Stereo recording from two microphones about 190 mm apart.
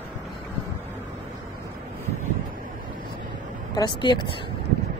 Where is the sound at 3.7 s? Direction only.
25° left (ahead or behind).